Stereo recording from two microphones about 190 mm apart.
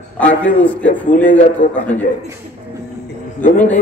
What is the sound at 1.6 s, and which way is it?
Speech, 45° left (ahead or behind).